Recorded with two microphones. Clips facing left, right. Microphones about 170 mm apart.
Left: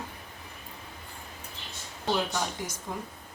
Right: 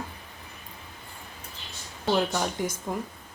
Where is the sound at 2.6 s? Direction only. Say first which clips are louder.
Right 8 dB; 55° right (ahead or behind).